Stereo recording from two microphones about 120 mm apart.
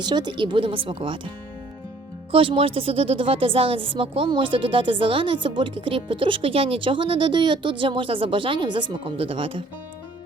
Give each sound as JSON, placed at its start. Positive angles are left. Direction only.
{"t": 0.0, "sound": "speech", "side_deg": -40}
{"t": 2.3, "sound": "speech", "side_deg": -50}